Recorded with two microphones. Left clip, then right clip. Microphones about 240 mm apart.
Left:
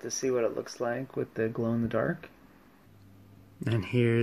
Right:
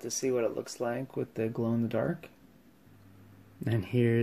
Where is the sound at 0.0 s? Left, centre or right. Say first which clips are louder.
Left 1 dB; centre.